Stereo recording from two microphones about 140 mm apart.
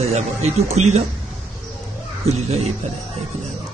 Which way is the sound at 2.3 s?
50° right (ahead or behind).